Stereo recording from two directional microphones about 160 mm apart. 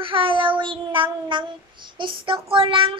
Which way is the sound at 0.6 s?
30° right (ahead or behind).